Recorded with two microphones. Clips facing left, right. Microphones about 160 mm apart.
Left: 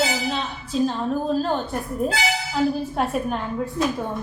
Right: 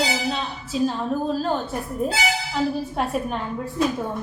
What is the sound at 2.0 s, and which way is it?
A woman's voice, centre (ahead or behind).